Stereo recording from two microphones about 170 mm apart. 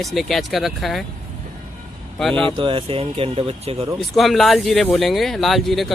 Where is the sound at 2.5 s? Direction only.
30° right (ahead or behind).